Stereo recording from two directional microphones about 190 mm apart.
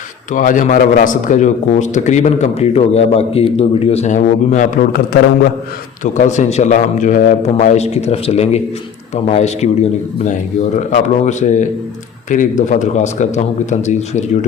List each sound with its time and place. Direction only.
0.3 s a man's voice: 45° left (ahead or behind)
6.1 s a man's voice: 40° left (ahead or behind)
10.8 s a man's voice: 40° left (ahead or behind)